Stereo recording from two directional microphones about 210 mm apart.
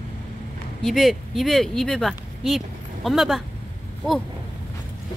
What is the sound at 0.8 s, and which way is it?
Speech, centre (ahead or behind).